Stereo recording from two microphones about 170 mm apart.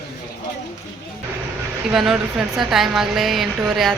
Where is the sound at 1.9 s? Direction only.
5° right (ahead or behind).